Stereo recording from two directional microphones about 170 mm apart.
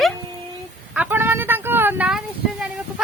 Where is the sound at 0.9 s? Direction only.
10° right (ahead or behind).